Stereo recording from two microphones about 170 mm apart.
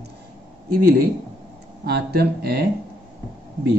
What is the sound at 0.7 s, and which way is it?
A man's voice, 65° right (ahead or behind).